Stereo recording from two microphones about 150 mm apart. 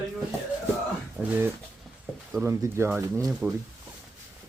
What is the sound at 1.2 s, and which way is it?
Speech, 15° right (ahead or behind).